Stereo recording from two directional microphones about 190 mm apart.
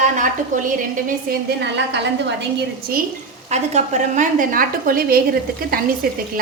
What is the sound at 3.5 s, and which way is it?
A woman's voice, 35° right (ahead or behind).